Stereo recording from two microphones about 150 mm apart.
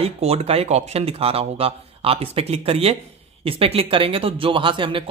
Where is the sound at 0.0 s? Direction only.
45° right (ahead or behind).